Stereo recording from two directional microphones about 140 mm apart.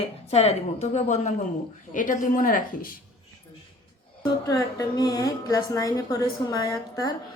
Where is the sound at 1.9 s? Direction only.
70° left (ahead or behind).